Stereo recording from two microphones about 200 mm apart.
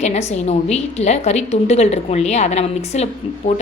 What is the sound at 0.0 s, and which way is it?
A woman's voice, 35° left (ahead or behind).